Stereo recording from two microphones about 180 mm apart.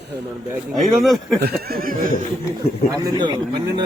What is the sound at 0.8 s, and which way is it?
Speech, centre (ahead or behind).